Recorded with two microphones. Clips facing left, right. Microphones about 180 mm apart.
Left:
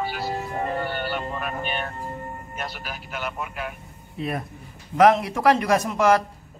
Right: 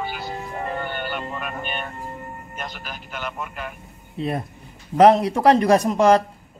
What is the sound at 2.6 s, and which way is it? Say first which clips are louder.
Speech: even; 5° left (ahead or behind).